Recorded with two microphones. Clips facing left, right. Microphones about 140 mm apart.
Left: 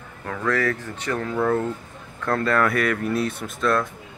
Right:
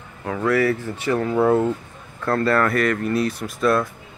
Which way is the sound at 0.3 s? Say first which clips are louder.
Right 4 dB; 15° right (ahead or behind).